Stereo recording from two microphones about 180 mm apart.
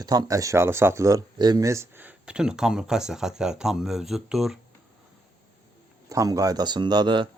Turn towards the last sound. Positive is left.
turn(degrees=-25)  # may be behind; listen again after turning